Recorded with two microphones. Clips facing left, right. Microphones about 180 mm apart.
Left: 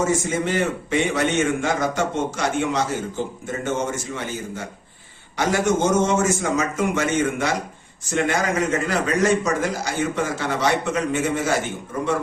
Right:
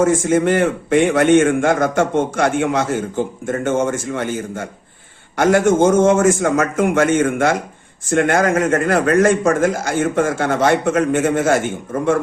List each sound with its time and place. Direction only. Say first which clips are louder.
0.0 s a man's voice: right 7 dB; 55° right (ahead or behind)